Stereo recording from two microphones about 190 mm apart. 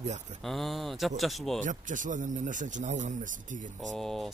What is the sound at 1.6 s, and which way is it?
Speech, 40° right (ahead or behind).